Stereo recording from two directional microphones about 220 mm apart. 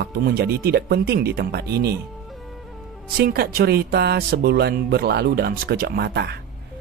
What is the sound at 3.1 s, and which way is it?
Speech, 45° right (ahead or behind).